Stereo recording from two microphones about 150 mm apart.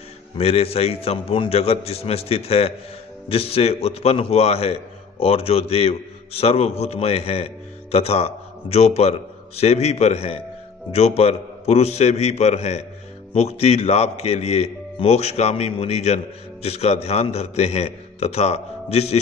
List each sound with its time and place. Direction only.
0.4 s a man's voice: 40° left (ahead or behind)